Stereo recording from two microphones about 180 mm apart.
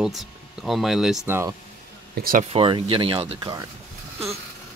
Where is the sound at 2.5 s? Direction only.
30° right (ahead or behind).